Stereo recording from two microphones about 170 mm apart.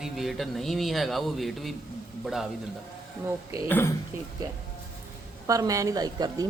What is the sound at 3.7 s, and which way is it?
Speech, 15° left (ahead or behind).